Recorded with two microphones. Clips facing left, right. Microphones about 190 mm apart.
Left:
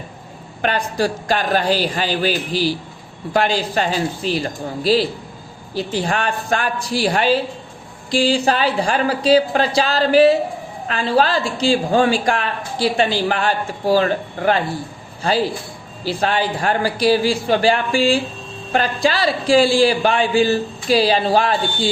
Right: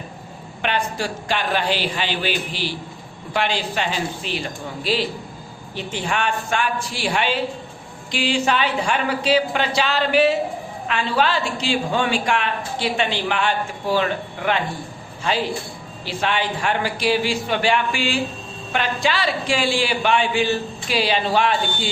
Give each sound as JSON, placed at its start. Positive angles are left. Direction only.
{"t": 0.6, "sound": "speech", "side_deg": 40}